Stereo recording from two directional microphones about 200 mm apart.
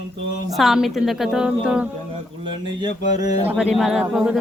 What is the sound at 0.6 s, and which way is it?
A woman's voice, centre (ahead or behind).